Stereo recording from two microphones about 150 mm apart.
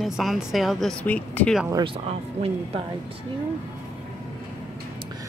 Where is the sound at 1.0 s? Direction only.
10° left (ahead or behind).